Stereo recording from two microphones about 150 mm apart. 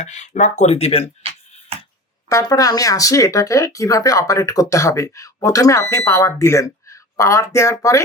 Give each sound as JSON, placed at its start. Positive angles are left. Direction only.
{"t": 0.0, "sound": "speech", "side_deg": 55}
{"t": 2.3, "sound": "speech", "side_deg": 25}